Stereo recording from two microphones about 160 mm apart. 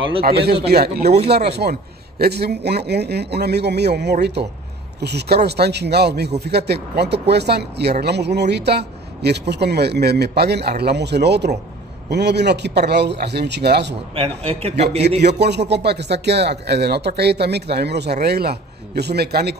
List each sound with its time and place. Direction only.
0.2 s speech: 85° right
14.1 s a man's voice: 35° right (ahead or behind)
15.3 s speech: 90° right